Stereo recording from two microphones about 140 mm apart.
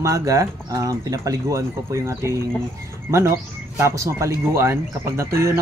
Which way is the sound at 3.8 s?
20° right (ahead or behind).